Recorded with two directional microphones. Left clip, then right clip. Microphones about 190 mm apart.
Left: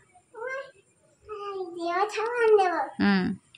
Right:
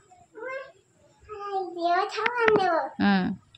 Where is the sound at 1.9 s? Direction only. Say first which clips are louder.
Left 1 dB; 20° right (ahead or behind).